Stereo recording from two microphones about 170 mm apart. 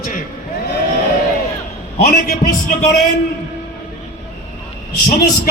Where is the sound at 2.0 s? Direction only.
60° left (ahead or behind).